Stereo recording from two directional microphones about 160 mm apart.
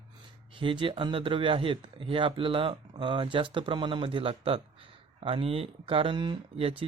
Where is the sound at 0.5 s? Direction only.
30° right (ahead or behind).